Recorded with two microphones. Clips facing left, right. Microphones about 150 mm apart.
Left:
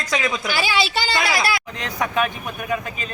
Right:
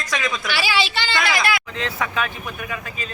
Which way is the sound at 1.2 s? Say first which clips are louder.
Right 3 dB; 35° left (ahead or behind).